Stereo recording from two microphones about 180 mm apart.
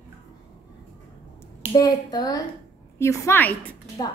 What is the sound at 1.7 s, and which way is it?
A woman's voice, 20° left (ahead or behind).